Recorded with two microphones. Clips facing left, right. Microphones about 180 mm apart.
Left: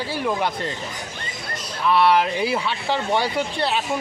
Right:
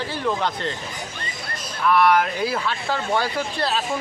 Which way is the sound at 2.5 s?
15° left (ahead or behind).